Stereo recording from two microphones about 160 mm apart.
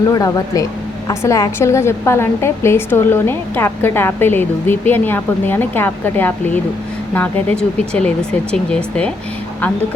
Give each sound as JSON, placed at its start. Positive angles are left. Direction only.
{"t": 0.1, "sound": "a woman's voice", "side_deg": 20}